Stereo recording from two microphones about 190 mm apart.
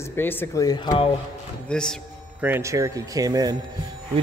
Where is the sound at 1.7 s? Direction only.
5° left (ahead or behind).